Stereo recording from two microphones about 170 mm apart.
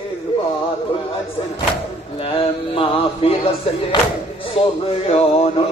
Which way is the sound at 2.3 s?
30° left (ahead or behind).